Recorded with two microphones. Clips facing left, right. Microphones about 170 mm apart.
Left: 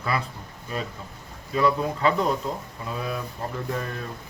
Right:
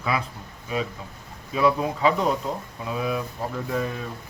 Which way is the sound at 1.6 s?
5° right (ahead or behind).